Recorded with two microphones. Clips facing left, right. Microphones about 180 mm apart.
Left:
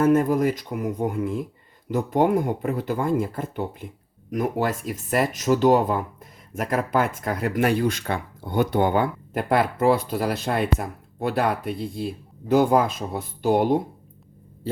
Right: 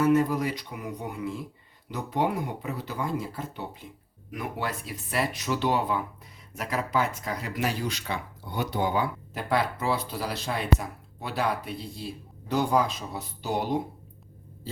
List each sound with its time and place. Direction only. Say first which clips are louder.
0.0 s speech: left 4 dB; 50° left (ahead or behind)
4.3 s speech: left 9 dB; 40° left (ahead or behind)